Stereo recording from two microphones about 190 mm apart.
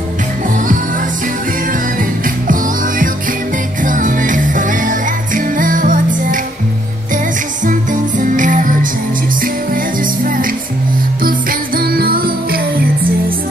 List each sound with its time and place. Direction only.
1.7 s music: 45° right (ahead or behind)
8.2 s music: 45° right (ahead or behind)